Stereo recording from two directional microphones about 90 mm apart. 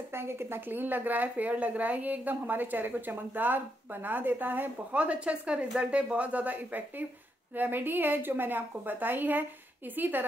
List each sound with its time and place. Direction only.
0.1 s speech: 25° right (ahead or behind)